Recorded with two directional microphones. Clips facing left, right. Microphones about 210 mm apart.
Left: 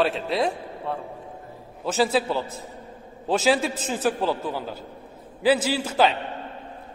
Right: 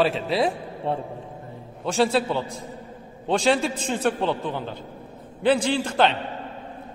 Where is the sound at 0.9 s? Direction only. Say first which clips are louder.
Right 4 dB; 30° right (ahead or behind).